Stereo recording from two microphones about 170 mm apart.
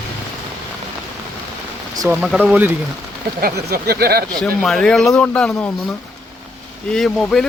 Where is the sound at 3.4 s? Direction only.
65° right (ahead or behind).